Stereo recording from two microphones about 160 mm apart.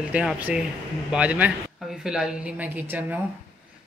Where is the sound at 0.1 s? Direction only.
5° right (ahead or behind).